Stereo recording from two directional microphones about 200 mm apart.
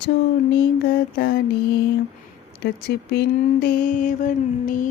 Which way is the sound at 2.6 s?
55° left (ahead or behind).